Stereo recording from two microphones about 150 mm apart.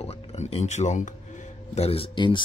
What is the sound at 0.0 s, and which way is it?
Speech, 40° left (ahead or behind).